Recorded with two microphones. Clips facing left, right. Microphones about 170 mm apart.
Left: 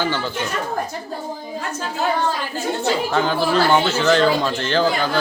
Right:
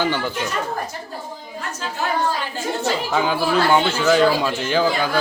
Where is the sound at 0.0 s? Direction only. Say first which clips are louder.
Right 1 dB; 15° right (ahead or behind).